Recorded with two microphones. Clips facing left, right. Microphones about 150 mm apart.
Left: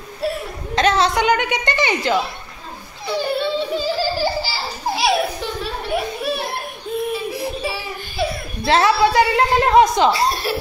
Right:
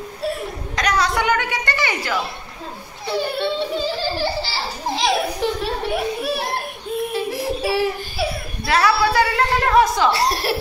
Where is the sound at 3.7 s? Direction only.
5° left (ahead or behind).